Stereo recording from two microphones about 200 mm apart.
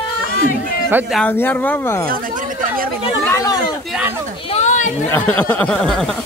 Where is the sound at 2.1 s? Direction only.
45° right (ahead or behind).